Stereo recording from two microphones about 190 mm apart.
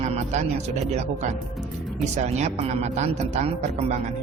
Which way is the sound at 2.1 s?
35° right (ahead or behind).